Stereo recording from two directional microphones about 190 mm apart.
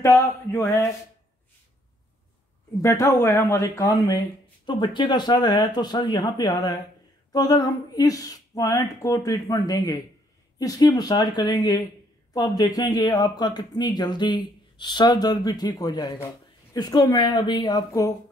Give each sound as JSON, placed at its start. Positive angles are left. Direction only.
{"t": 0.0, "sound": "speech", "side_deg": 15}
{"t": 2.7, "sound": "speech", "side_deg": 15}